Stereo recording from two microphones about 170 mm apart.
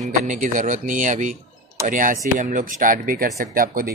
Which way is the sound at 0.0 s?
45° right (ahead or behind).